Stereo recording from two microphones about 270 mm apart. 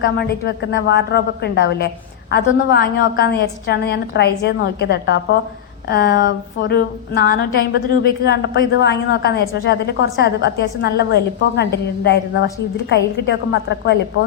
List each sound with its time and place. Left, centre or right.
0.0 s a woman's voice: left